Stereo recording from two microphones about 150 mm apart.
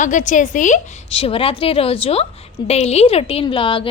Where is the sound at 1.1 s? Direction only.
40° left (ahead or behind).